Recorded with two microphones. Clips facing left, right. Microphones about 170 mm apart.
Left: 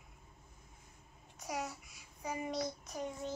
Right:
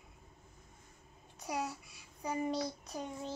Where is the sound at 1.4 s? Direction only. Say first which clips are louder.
Right 2 dB; 30° right (ahead or behind).